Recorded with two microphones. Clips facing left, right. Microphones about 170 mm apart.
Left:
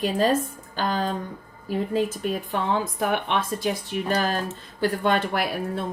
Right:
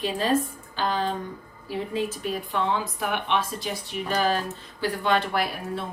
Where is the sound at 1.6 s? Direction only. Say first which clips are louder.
Left 4 dB; 45° left (ahead or behind).